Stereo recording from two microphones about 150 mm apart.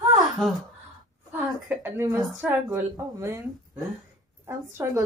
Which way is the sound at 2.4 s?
15° right (ahead or behind).